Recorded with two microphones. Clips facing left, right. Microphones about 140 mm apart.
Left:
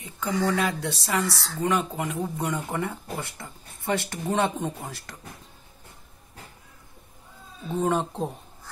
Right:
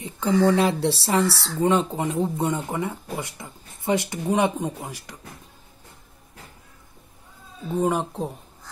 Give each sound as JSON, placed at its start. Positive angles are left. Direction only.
{"t": 0.0, "sound": "speech", "side_deg": -25}
{"t": 7.7, "sound": "speech", "side_deg": -10}